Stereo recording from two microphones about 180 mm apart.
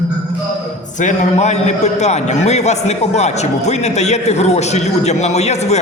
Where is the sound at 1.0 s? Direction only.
40° left (ahead or behind).